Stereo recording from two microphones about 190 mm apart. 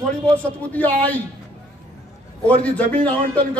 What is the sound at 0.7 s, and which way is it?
Speech, 10° left (ahead or behind).